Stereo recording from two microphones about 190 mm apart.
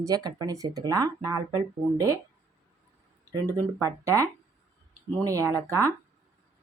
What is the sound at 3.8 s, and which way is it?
Speech, 15° right (ahead or behind).